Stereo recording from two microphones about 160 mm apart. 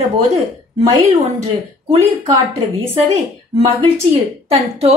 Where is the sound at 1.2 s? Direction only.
40° right (ahead or behind).